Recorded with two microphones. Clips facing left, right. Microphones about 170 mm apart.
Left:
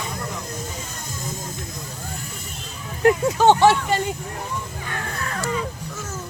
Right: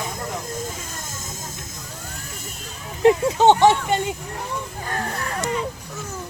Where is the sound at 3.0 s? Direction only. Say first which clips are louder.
Right 1 dB; 20° right (ahead or behind).